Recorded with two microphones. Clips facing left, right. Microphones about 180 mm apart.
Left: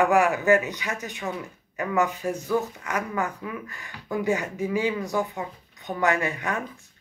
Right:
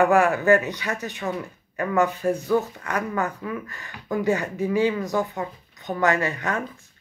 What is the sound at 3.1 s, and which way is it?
Speech, 15° left (ahead or behind).